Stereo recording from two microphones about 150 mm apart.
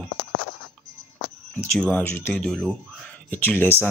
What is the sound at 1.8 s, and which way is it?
Speech, 10° left (ahead or behind).